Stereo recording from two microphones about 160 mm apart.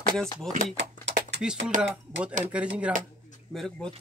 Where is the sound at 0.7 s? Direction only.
90° right.